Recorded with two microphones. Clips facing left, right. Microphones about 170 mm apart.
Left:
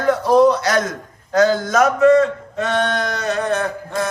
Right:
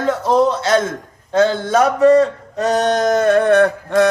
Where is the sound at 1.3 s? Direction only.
25° right (ahead or behind).